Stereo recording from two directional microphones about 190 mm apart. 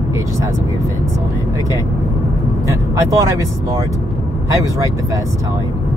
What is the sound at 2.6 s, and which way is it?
Speech, 15° right (ahead or behind).